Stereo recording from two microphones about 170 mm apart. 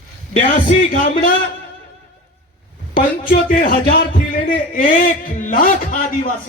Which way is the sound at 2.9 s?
55° left (ahead or behind).